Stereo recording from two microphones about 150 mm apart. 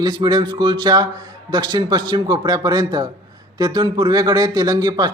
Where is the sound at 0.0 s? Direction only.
25° right (ahead or behind).